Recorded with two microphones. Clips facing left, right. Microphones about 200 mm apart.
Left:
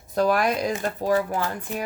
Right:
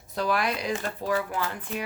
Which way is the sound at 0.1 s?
45° left (ahead or behind).